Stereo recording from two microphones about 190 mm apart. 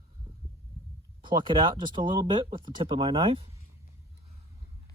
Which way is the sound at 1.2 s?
25° right (ahead or behind).